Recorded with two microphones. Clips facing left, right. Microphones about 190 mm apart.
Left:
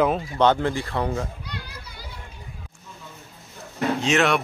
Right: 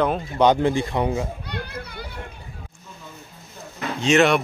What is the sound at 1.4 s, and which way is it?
Children playing, 60° right (ahead or behind).